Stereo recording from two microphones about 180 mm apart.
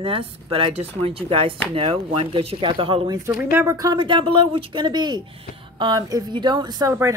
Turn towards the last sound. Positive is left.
turn(degrees=-20)  # may be behind; listen again after turning